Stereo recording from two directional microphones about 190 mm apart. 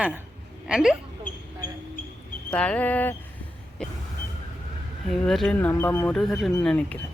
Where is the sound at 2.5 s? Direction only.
5° left (ahead or behind).